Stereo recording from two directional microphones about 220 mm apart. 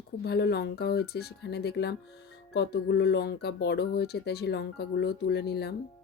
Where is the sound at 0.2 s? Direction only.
45° left (ahead or behind).